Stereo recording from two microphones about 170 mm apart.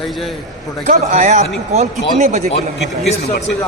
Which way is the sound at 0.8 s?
40° right (ahead or behind).